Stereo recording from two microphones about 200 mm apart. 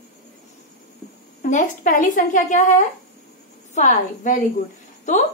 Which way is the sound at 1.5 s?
40° left (ahead or behind).